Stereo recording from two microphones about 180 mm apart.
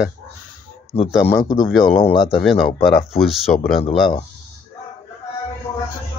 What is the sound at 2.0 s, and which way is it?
Speech, 35° left (ahead or behind).